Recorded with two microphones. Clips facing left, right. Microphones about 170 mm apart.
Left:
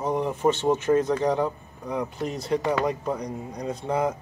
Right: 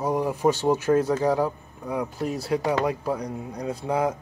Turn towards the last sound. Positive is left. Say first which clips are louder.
# right 1 dB
turn(degrees=-10)  # may be behind; listen again after turning